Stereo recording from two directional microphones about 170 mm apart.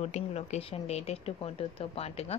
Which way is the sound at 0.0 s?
40° left (ahead or behind).